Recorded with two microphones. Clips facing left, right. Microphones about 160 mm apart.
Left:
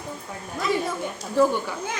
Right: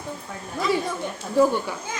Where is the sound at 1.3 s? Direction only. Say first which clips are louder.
Right 1 dB; 15° right (ahead or behind).